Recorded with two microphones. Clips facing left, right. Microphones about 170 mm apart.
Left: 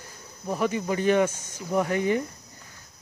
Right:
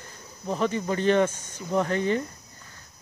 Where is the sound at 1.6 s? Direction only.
10° left (ahead or behind).